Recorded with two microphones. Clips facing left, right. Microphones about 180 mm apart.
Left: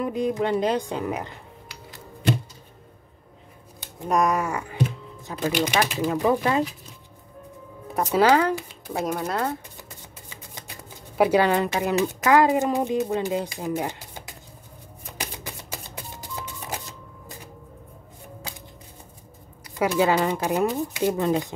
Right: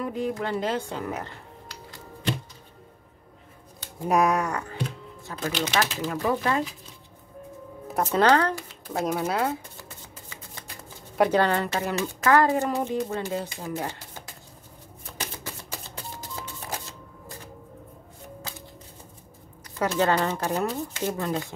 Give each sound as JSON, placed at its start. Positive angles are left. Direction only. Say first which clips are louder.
{"t": 0.0, "sound": "speech", "louder": "left 4 dB", "side_deg": 15}
{"t": 4.0, "sound": "speech", "louder": "even", "side_deg": -5}
{"t": 8.1, "sound": "speech", "louder": "left 2 dB", "side_deg": 5}
{"t": 8.9, "sound": "speech", "louder": "even", "side_deg": 0}
{"t": 11.1, "sound": "a woman's voice", "louder": "left 2 dB", "side_deg": 10}
{"t": 15.0, "sound": "shuffling cards", "louder": "left 1 dB", "side_deg": 15}
{"t": 19.6, "sound": "a woman's voice", "louder": "left 3 dB", "side_deg": 10}